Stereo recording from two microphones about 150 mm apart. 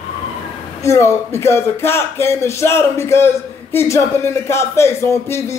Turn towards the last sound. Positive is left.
turn(degrees=20)  # may be behind; listen again after turning